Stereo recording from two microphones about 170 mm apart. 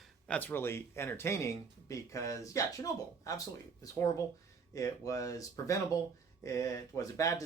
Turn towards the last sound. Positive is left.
turn(degrees=20)  # may be behind; listen again after turning